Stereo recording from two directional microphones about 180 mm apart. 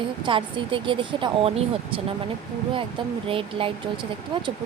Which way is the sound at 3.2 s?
30° right (ahead or behind).